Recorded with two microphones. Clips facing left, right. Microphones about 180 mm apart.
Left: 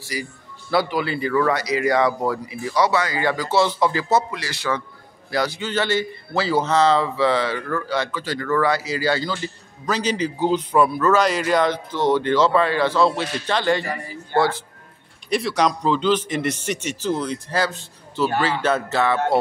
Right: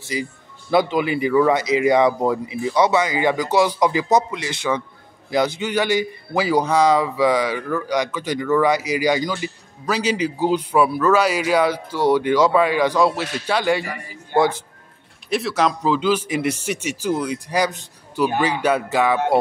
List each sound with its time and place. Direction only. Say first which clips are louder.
0.0 s a man's voice: right 4 dB; 20° right (ahead or behind)
15.2 s a man's voice: even; centre (ahead or behind)